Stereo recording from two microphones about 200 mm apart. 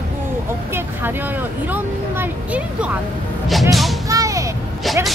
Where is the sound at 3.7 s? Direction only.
Centre (ahead or behind).